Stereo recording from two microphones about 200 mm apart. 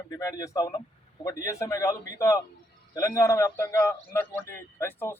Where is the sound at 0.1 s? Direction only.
15° left (ahead or behind).